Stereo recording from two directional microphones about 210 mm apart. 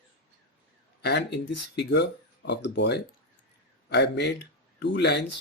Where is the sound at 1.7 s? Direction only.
55° left (ahead or behind).